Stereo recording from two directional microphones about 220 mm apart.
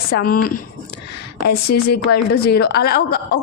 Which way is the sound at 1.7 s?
45° left (ahead or behind).